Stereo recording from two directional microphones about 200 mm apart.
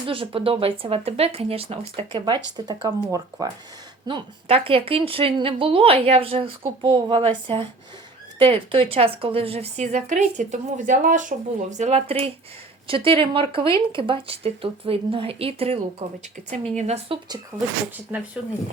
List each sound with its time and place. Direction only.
0.1 s a woman's voice: 25° right (ahead or behind)
17.5 s speech: 15° right (ahead or behind)